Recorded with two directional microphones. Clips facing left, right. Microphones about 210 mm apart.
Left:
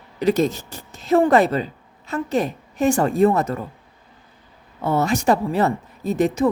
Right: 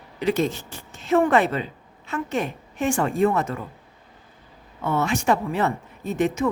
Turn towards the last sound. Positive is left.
turn(degrees=35)  # may be behind; listen again after turning